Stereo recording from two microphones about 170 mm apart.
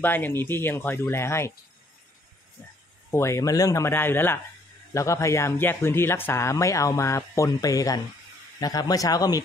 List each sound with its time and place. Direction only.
0.0 s speech: 10° left (ahead or behind)
3.1 s speech: 15° left (ahead or behind)